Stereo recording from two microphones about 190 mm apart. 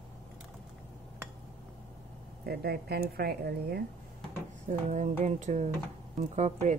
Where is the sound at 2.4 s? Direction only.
55° right (ahead or behind).